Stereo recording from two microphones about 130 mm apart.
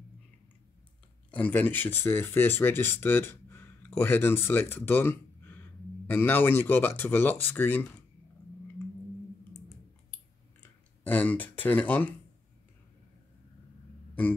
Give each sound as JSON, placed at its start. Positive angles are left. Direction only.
{"t": 1.3, "sound": "speech", "side_deg": 10}
{"t": 10.6, "sound": "speech", "side_deg": 10}